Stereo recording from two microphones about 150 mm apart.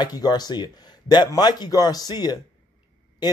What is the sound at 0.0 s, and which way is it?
Speech, 25° left (ahead or behind).